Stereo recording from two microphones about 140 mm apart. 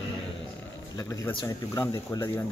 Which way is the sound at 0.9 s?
20° left (ahead or behind).